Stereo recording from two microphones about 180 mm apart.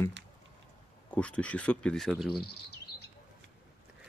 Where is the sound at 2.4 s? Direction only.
65° left (ahead or behind).